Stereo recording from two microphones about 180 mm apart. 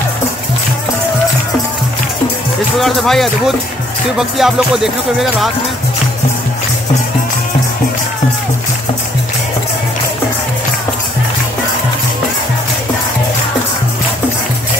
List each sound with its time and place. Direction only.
2.8 s speech: centre (ahead or behind)